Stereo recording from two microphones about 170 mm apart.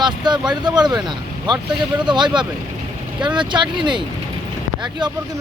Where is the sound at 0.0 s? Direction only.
25° right (ahead or behind).